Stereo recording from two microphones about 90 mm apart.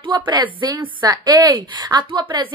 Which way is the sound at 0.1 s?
55° right (ahead or behind).